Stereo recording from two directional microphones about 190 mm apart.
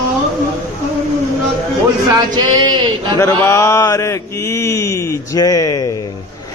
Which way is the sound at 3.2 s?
10° left (ahead or behind).